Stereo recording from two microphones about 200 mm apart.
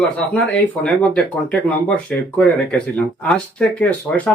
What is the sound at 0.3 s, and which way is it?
Speech, 5° left (ahead or behind).